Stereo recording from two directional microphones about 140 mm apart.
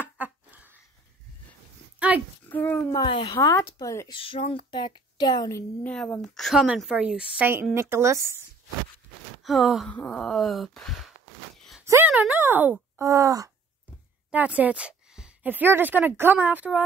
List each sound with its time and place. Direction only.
0.2 s a sound: 10° right (ahead or behind)
2.0 s a sound: 10° right (ahead or behind)
2.5 s speech: 10° left (ahead or behind)
2.9 s speech: 25° left (ahead or behind)
4.1 s speech: 40° left (ahead or behind); by 5.7 s 25° left (ahead or behind)
5.9 s speech: 10° left (ahead or behind)
6.3 s a woman's voice: centre (ahead or behind); by 8.4 s 20° right (ahead or behind)
9.4 s speech: centre (ahead or behind)
9.8 s a sound: 10° left (ahead or behind)
11.8 s a sound: 20° right (ahead or behind)
12.1 s a woman's voice: 10° right (ahead or behind)
13.0 s speech: 25° right (ahead or behind)
14.3 s speech: 10° right (ahead or behind)